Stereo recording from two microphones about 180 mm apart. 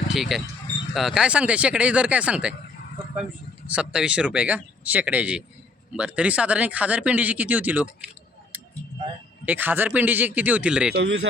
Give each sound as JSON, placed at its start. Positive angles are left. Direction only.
{"t": 0.1, "sound": "speech", "side_deg": 0}
{"t": 3.7, "sound": "speech", "side_deg": -5}
{"t": 9.5, "sound": "speech", "side_deg": -10}
{"t": 10.9, "sound": "speech", "side_deg": -75}